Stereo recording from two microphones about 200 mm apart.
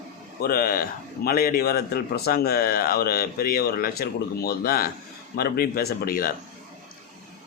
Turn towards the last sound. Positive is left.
turn(degrees=45)  # may be behind; listen again after turning